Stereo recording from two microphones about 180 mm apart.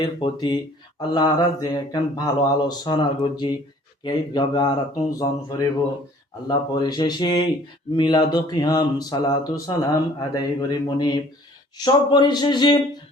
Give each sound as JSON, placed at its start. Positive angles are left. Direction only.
{"t": 0.0, "sound": "speech", "side_deg": 25}